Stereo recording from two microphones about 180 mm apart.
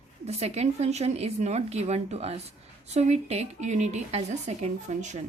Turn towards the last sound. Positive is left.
turn(degrees=-40)  # may be behind; listen again after turning